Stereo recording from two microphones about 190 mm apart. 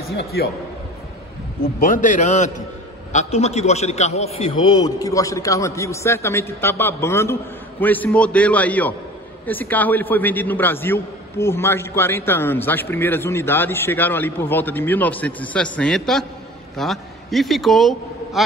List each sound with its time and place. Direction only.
0.0 s a man's voice: 55° left (ahead or behind)
1.8 s a man's voice: 45° left (ahead or behind); by 18.4 s centre (ahead or behind)